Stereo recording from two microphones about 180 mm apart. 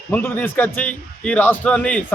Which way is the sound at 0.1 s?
10° left (ahead or behind).